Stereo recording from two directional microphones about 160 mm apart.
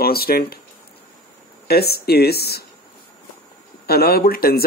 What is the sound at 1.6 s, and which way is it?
Speech, 80° left.